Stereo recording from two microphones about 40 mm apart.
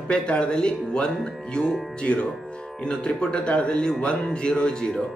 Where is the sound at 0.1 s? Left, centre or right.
Left.